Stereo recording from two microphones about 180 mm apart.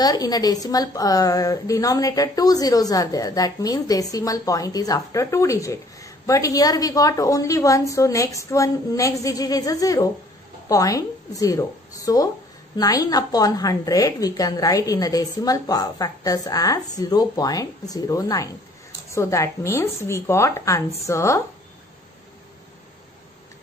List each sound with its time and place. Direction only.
0.0 s a woman's voice: 20° left (ahead or behind)